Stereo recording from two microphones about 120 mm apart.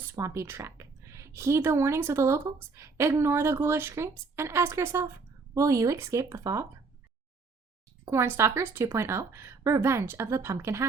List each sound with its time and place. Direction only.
0.1 s speech: 25° right (ahead or behind)
8.0 s speech: 20° right (ahead or behind)